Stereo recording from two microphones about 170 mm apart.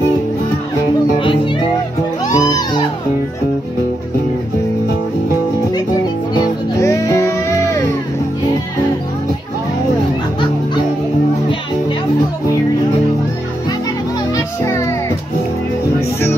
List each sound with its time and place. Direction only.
1.2 s music: 30° left (ahead or behind)
6.3 s music: 20° left (ahead or behind)